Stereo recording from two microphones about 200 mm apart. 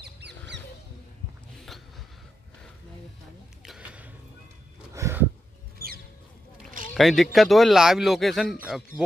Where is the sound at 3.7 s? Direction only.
5° right (ahead or behind).